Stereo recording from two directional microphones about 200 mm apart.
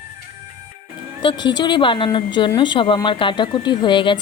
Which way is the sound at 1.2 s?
25° left (ahead or behind).